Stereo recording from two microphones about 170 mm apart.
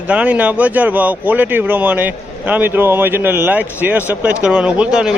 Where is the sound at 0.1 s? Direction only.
5° right (ahead or behind).